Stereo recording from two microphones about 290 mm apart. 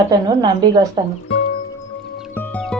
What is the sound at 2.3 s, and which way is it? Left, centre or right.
Music, centre.